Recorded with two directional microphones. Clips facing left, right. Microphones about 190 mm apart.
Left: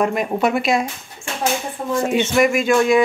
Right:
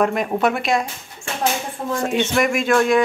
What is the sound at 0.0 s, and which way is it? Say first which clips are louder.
Speech: even; centre (ahead or behind).